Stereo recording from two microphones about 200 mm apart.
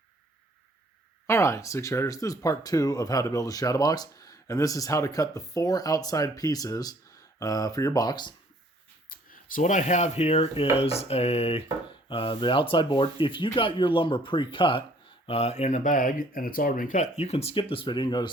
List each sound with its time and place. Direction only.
1.3 s speech: 15° left (ahead or behind)
9.0 s speech: 45° left (ahead or behind); by 18.3 s 25° left (ahead or behind)